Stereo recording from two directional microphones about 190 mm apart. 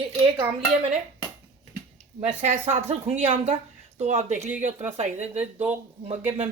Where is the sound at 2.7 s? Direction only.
30° right (ahead or behind).